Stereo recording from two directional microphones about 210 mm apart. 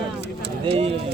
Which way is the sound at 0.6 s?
30° right (ahead or behind).